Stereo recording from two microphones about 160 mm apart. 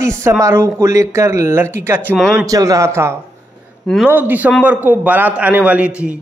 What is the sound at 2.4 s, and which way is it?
Speech, 20° right (ahead or behind).